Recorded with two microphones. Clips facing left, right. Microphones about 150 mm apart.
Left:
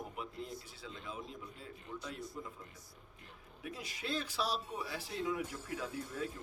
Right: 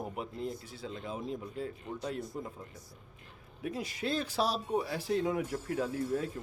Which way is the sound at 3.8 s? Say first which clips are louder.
Right 6 dB; 45° right (ahead or behind).